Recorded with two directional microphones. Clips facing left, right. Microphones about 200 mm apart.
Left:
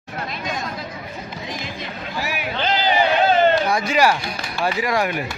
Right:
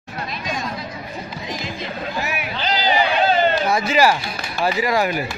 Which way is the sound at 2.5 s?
55° left (ahead or behind).